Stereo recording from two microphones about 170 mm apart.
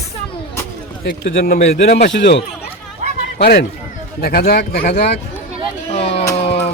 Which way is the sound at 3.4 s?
70° left (ahead or behind).